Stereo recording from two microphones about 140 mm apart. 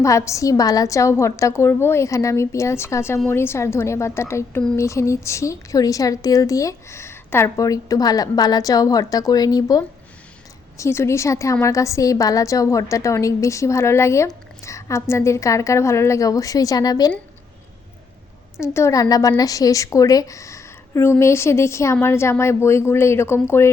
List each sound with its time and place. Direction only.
0.0 s a woman's voice: 20° left (ahead or behind)
18.6 s a woman's voice: 20° left (ahead or behind)